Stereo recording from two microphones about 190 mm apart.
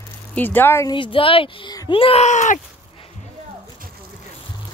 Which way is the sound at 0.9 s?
25° left (ahead or behind).